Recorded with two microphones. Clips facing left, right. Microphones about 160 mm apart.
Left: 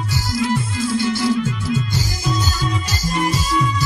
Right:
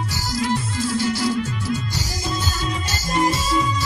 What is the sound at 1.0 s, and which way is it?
Music, 40° right (ahead or behind).